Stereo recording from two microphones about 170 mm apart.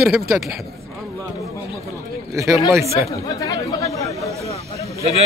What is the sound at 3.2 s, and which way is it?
Chatter, 20° left (ahead or behind).